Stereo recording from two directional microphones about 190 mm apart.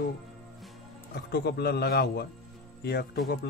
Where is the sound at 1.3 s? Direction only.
60° left (ahead or behind).